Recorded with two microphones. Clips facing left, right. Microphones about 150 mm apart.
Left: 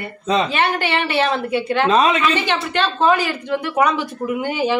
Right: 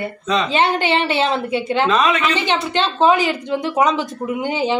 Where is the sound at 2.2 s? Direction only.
20° right (ahead or behind).